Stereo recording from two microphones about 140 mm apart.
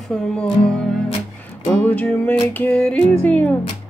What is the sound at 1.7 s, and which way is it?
Music, 10° left (ahead or behind).